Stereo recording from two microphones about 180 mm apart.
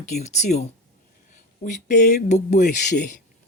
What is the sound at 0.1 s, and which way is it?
Speech, 40° left (ahead or behind).